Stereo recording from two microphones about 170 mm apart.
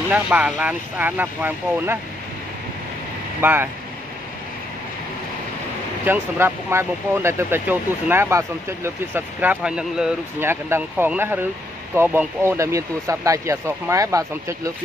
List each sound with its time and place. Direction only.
0.1 s speech: 10° right (ahead or behind)
3.3 s speech: 15° right (ahead or behind)
6.0 s speech: 15° right (ahead or behind)